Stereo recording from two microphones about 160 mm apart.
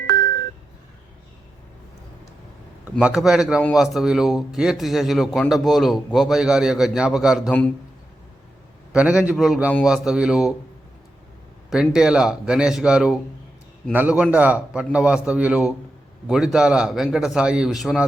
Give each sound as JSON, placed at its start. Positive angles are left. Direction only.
{"t": 3.0, "sound": "a man's voice", "side_deg": -5}
{"t": 8.9, "sound": "a man's voice", "side_deg": -5}
{"t": 11.7, "sound": "a man's voice", "side_deg": -5}